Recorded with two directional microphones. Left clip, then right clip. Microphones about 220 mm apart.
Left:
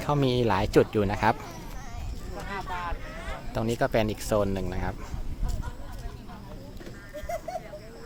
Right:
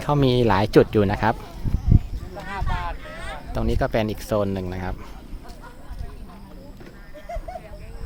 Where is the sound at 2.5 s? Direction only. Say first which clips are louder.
Right 3 dB; 45° right (ahead or behind).